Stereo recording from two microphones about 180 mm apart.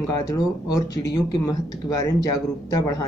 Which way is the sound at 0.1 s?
20° left (ahead or behind).